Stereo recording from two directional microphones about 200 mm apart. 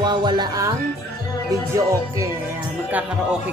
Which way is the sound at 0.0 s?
20° right (ahead or behind).